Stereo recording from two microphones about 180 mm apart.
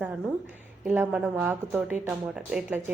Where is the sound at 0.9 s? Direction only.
10° right (ahead or behind).